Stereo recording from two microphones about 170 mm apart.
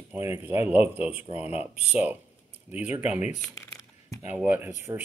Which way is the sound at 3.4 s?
15° left (ahead or behind).